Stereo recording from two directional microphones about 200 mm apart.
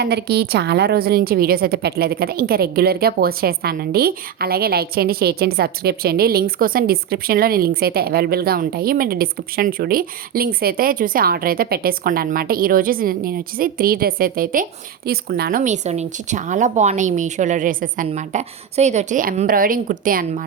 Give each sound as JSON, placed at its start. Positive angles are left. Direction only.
{"t": 0.0, "sound": "a woman's voice", "side_deg": -55}